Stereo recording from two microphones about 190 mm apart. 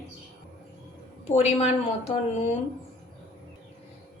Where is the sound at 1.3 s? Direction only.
35° left (ahead or behind).